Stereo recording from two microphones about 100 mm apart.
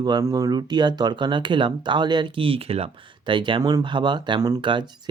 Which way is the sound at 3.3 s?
55° right (ahead or behind).